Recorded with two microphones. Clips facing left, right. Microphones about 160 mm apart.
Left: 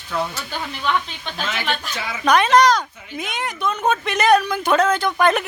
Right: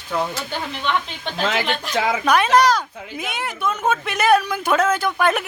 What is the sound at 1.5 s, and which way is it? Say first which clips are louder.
Speech: right 1 dB; 90° right.